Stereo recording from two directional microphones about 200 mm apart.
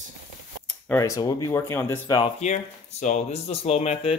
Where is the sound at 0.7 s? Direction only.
10° left (ahead or behind).